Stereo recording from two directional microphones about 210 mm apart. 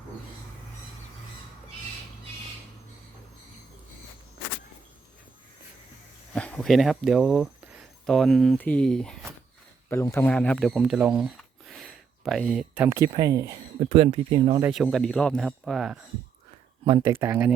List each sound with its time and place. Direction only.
6.3 s speech: 5° left (ahead or behind); by 13.6 s 15° right (ahead or behind)
13.7 s speech: 25° right (ahead or behind)
14.6 s speech: 5° right (ahead or behind)
16.8 s speech: 25° right (ahead or behind)
17.1 s speech: 10° right (ahead or behind)